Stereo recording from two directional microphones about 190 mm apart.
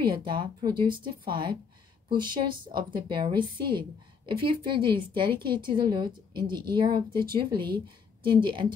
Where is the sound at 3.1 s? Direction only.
25° right (ahead or behind).